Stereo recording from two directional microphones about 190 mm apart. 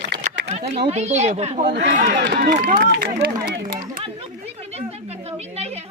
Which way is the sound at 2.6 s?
45° right (ahead or behind).